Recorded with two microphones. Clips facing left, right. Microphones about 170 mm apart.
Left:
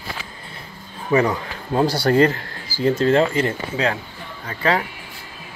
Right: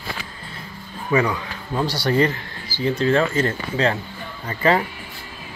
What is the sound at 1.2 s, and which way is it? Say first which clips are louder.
A man's voice: left 2 dB; 25° left (ahead or behind).